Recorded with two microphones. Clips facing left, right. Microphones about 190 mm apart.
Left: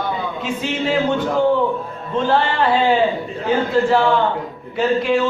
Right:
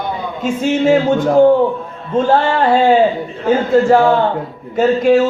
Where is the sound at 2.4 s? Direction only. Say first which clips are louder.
Right 5 dB; 45° right (ahead or behind).